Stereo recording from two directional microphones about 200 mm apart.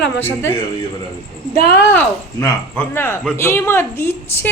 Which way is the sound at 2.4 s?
15° left (ahead or behind).